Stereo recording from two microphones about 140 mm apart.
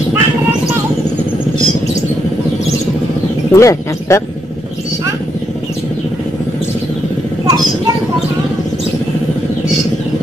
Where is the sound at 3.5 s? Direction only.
20° left (ahead or behind).